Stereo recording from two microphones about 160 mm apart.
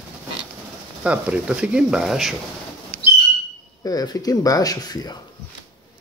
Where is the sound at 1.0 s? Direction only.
5° right (ahead or behind).